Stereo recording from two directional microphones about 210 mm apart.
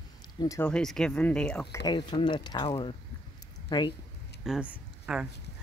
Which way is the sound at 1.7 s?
20° left (ahead or behind).